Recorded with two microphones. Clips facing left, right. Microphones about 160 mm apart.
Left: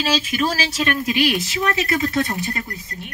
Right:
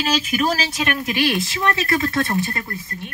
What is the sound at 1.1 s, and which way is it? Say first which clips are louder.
Speech: left 1 dB; 20° left (ahead or behind).